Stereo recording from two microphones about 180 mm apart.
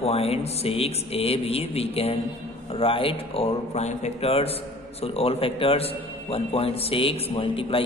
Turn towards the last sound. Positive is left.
turn(degrees=30)  # may be behind; listen again after turning